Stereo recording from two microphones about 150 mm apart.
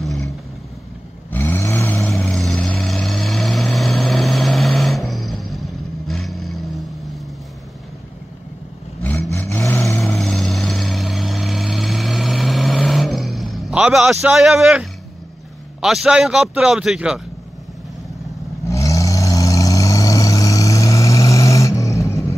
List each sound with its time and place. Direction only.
1.3 s vehicle: 15° left (ahead or behind)
2.0 s vehicle: centre (ahead or behind)
9.3 s vehicle: 20° left (ahead or behind)
9.9 s vehicle: centre (ahead or behind)
15.8 s speech: 5° right (ahead or behind)
18.7 s vehicle: 20° left (ahead or behind)